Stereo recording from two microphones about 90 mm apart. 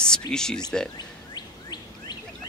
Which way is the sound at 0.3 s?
5° left (ahead or behind).